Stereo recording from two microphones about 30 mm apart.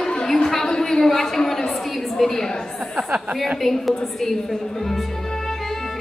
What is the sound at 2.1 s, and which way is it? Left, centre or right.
Speech, centre.